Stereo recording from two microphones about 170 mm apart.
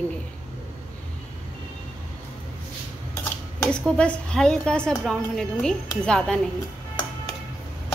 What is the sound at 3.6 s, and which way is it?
A woman's voice, 5° left (ahead or behind).